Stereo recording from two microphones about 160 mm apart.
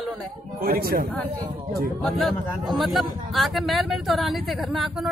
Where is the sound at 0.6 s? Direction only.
70° right (ahead or behind).